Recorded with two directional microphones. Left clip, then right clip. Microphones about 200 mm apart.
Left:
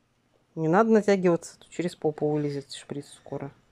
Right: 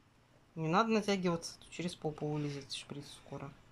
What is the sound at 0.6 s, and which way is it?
Speech, 30° left (ahead or behind).